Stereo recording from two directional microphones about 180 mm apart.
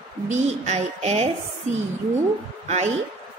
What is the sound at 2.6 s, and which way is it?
Speech, 40° right (ahead or behind).